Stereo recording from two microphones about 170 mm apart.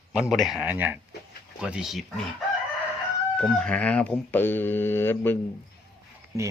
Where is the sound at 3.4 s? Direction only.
5° left (ahead or behind).